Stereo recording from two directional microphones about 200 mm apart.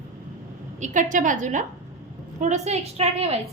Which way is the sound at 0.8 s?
40° right (ahead or behind).